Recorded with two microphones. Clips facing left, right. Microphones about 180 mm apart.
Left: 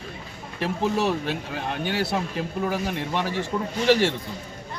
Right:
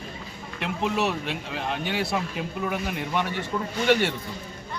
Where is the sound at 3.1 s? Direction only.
35° left (ahead or behind).